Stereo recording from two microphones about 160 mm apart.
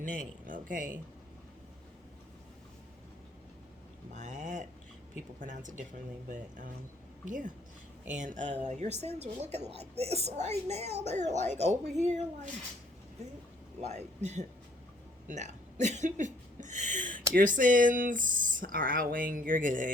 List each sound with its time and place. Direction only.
0.0 s speech: 55° right (ahead or behind)
4.1 s a woman's voice: 50° right (ahead or behind)
13.8 s speech: 45° right (ahead or behind)